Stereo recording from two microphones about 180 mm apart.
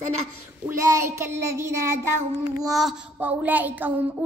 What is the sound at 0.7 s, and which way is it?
Child singing, 15° right (ahead or behind).